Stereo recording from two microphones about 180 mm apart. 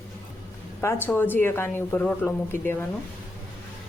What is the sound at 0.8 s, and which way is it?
Speech, 10° left (ahead or behind).